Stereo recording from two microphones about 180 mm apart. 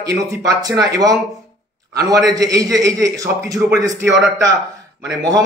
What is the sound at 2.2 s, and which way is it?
Speech, 20° right (ahead or behind).